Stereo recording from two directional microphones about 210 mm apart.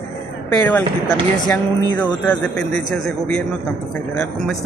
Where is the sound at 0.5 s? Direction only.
10° left (ahead or behind).